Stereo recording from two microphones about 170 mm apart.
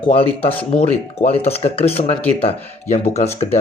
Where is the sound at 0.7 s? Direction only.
35° left (ahead or behind).